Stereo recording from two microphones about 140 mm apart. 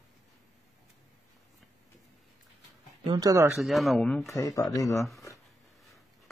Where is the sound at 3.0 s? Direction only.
30° right (ahead or behind).